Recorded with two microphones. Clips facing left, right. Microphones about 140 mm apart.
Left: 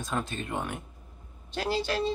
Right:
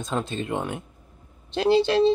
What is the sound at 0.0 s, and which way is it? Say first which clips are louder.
Speech: right 5 dB; 25° right (ahead or behind).